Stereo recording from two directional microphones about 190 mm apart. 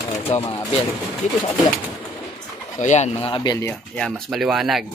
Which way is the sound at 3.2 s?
25° left (ahead or behind).